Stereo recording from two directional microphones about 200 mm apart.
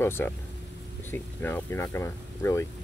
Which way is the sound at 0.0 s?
10° left (ahead or behind).